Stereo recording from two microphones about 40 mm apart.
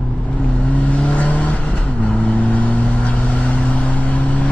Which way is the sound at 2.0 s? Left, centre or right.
Left.